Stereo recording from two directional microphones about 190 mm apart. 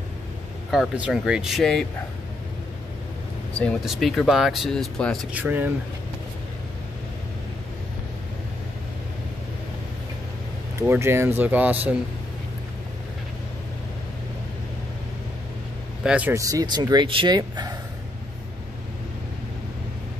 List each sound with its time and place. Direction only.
0.7 s speech: 5° right (ahead or behind)
3.5 s speech: centre (ahead or behind)
10.8 s speech: 15° right (ahead or behind)
16.0 s speech: 5° right (ahead or behind); by 17.7 s 20° right (ahead or behind)